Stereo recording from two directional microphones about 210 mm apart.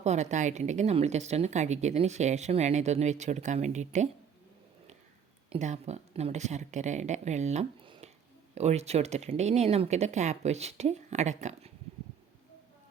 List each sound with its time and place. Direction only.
0.0 s speech: 35° right (ahead or behind)
5.5 s speech: 35° right (ahead or behind)